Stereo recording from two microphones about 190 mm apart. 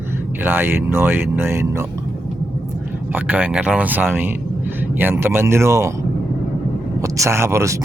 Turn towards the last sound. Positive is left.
turn(degrees=-15)  # may be behind; listen again after turning